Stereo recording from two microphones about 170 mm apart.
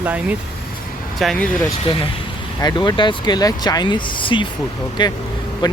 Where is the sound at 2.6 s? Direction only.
25° left (ahead or behind).